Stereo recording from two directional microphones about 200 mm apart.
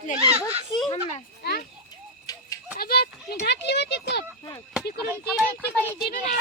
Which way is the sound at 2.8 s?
50° left (ahead or behind).